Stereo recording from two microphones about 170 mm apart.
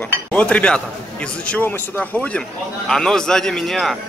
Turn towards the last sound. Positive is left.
turn(degrees=0)  # may be behind; listen again after turning